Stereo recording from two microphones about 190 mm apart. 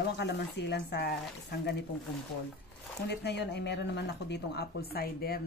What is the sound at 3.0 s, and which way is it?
Speech, 60° left (ahead or behind).